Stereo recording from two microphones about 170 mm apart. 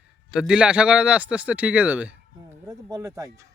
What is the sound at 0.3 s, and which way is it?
A man's voice, 5° right (ahead or behind).